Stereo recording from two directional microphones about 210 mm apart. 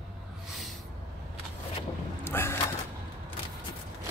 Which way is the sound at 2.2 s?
10° left (ahead or behind).